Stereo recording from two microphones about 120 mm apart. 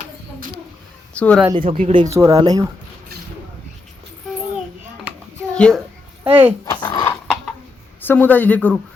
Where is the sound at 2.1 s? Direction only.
25° right (ahead or behind).